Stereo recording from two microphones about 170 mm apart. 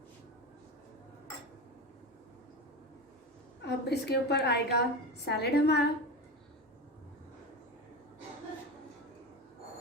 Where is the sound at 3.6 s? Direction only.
75° left (ahead or behind).